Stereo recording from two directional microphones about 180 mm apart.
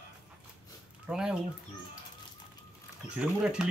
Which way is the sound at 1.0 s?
5° right (ahead or behind).